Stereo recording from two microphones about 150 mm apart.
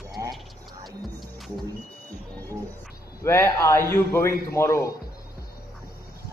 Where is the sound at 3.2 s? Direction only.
15° left (ahead or behind).